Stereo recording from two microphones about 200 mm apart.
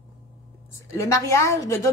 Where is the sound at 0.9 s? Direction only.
15° left (ahead or behind).